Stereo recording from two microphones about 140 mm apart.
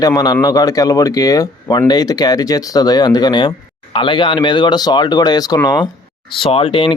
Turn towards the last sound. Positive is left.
turn(degrees=40)  # may be behind; listen again after turning